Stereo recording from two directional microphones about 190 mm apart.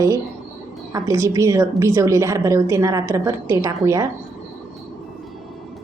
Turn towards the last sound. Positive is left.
turn(degrees=-15)  # may be behind; listen again after turning